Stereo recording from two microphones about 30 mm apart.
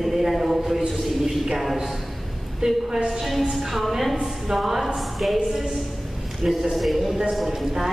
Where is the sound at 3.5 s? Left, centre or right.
Centre.